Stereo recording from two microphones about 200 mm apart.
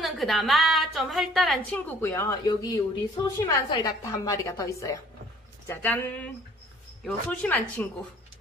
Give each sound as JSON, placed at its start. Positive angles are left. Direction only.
{"t": 0.0, "sound": "a woman's voice", "side_deg": 0}